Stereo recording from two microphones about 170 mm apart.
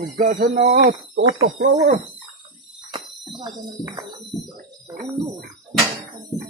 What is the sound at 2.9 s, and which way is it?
Cricket, 25° right (ahead or behind).